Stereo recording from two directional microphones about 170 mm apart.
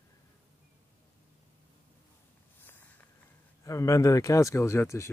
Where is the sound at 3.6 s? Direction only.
20° left (ahead or behind).